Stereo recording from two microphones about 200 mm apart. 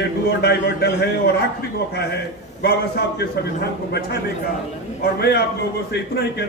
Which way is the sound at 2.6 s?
55° left (ahead or behind).